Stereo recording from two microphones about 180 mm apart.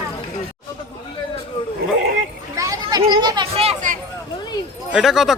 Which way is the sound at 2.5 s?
15° right (ahead or behind).